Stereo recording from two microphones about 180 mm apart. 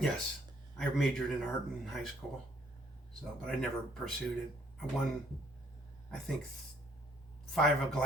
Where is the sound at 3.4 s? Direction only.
Centre (ahead or behind).